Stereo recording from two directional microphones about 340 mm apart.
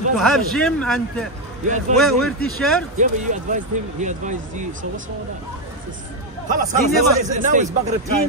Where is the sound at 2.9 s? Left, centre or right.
Right.